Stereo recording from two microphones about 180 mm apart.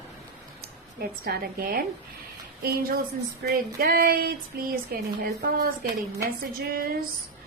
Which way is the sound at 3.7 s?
55° right (ahead or behind).